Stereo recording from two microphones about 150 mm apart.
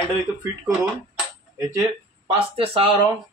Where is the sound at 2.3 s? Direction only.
40° right (ahead or behind).